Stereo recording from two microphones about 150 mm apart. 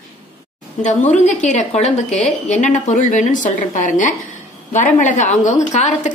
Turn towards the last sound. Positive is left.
turn(degrees=50)  # may be behind; listen again after turning